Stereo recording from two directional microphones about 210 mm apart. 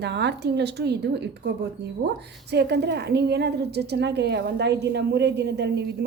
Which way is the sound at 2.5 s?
55° right (ahead or behind).